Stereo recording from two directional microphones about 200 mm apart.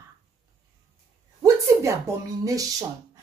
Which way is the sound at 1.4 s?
15° right (ahead or behind).